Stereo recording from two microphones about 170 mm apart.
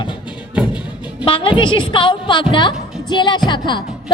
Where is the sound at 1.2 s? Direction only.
30° left (ahead or behind).